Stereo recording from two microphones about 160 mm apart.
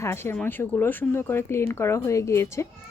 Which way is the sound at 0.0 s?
15° left (ahead or behind).